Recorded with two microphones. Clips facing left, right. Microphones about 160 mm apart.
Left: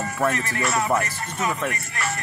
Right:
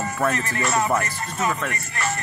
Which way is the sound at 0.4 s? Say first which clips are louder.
Right 1 dB; 40° right (ahead or behind).